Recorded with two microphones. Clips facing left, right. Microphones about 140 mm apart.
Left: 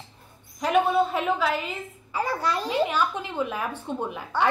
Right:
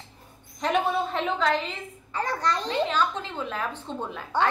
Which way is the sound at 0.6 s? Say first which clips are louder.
Left 3 dB; 5° left (ahead or behind).